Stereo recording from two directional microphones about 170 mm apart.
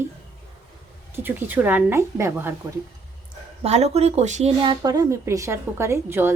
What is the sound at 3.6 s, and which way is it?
Speech, 40° right (ahead or behind).